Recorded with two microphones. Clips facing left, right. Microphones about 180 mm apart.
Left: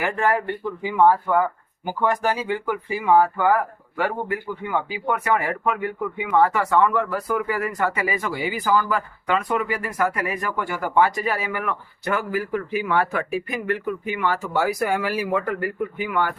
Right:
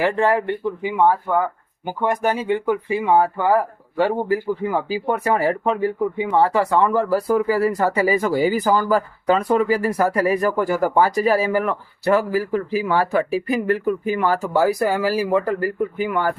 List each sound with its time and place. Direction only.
0.0 s speech: 25° right (ahead or behind)